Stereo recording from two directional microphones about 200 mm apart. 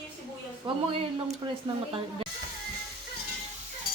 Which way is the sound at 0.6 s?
25° right (ahead or behind).